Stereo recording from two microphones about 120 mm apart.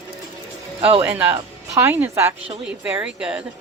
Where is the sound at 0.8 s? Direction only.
50° right (ahead or behind).